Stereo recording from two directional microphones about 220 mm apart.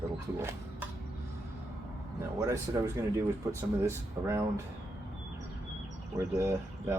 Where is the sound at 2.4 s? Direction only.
15° right (ahead or behind).